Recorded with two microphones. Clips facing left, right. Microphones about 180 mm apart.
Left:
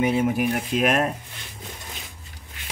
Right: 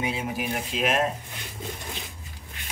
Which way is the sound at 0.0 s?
55° left (ahead or behind).